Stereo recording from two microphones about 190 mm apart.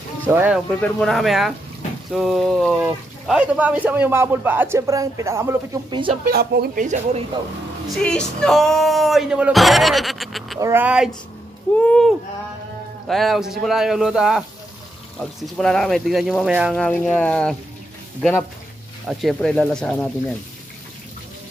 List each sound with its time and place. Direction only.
0.3 s speech: 10° right (ahead or behind)
0.7 s speech: 5° left (ahead or behind); by 5.8 s 15° right (ahead or behind)
5.9 s speech: 25° right (ahead or behind)
6.2 s speech: 55° right (ahead or behind)
7.9 s speech: 5° left (ahead or behind)
10.6 s speech: 10° right (ahead or behind)
11.8 s speech: 5° left (ahead or behind)
13.1 s speech: centre (ahead or behind)
19.0 s speech: centre (ahead or behind)